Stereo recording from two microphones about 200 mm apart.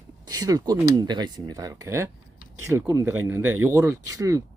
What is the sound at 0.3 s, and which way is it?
Speech, 20° right (ahead or behind).